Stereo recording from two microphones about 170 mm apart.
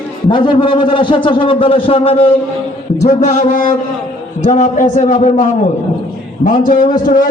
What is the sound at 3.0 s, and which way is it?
A man's voice, 45° left (ahead or behind).